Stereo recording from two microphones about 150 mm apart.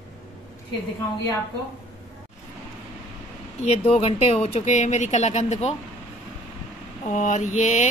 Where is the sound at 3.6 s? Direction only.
45° left (ahead or behind).